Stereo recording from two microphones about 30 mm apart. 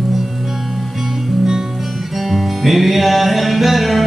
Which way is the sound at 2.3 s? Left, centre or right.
Centre.